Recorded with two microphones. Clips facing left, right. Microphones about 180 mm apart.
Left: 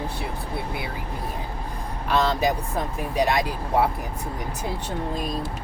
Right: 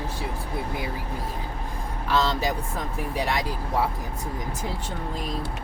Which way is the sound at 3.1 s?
15° left (ahead or behind).